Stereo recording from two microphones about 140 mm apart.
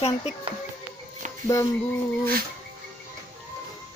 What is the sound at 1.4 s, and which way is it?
Speech, 25° left (ahead or behind).